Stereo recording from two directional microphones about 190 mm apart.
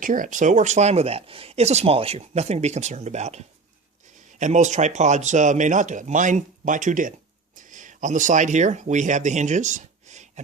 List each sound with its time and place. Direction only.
0.0 s speech: 45° right (ahead or behind)